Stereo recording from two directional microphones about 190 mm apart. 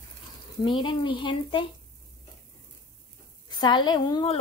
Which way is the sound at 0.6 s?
25° left (ahead or behind).